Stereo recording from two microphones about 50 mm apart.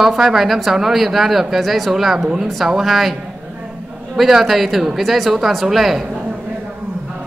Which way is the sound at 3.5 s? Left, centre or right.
Right.